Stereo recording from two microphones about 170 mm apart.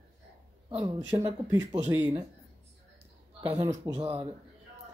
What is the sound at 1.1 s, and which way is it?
Speech, 25° right (ahead or behind).